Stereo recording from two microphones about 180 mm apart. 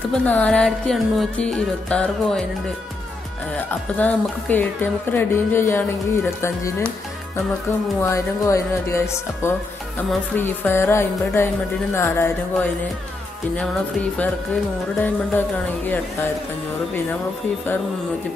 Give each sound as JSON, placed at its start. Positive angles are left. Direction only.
{"t": 0.1, "sound": "music", "side_deg": 5}
{"t": 3.5, "sound": "speech", "side_deg": 10}
{"t": 8.0, "sound": "speech", "side_deg": 15}